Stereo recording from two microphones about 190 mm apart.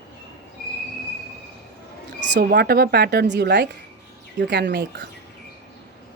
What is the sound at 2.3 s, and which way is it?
A woman's voice, 60° right (ahead or behind).